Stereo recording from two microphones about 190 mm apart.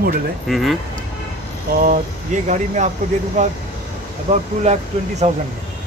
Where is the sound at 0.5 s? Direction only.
Centre (ahead or behind).